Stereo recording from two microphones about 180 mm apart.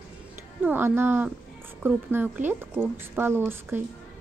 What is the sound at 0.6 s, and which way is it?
A woman's voice, 10° right (ahead or behind).